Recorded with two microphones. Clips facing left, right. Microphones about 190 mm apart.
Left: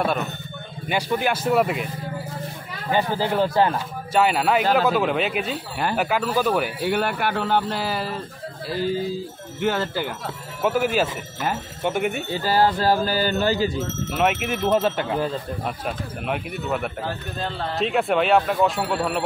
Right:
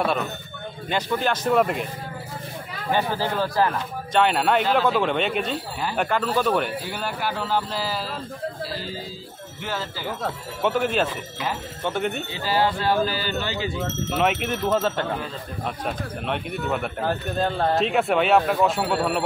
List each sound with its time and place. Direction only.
0.8 s speech: 10° left (ahead or behind)
2.9 s speech: 15° left (ahead or behind)
4.1 s speech: 5° left (ahead or behind)
6.8 s speech: 60° left (ahead or behind)
9.6 s speech: 60° left (ahead or behind)
10.6 s speech: 5° left (ahead or behind)
12.3 s speech: 45° left (ahead or behind)
14.1 s speech: centre (ahead or behind)
17.0 s a man's voice: 50° right (ahead or behind)
17.7 s speech: centre (ahead or behind)